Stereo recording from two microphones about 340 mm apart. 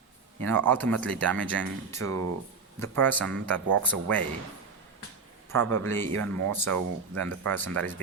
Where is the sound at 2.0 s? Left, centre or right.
Right.